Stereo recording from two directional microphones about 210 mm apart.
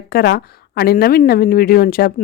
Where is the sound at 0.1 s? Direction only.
50° left (ahead or behind).